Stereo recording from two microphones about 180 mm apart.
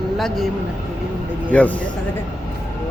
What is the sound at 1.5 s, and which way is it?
Speech, 10° left (ahead or behind).